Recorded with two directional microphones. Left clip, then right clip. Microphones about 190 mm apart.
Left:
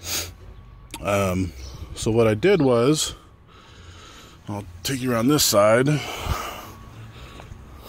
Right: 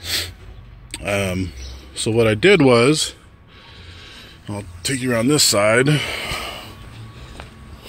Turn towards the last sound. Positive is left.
turn(degrees=10)  # may be behind; listen again after turning